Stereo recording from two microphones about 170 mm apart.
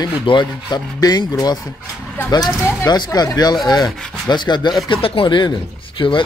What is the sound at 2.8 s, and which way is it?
Speech, 20° left (ahead or behind).